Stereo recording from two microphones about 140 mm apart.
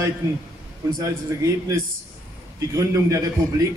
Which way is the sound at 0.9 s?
25° right (ahead or behind).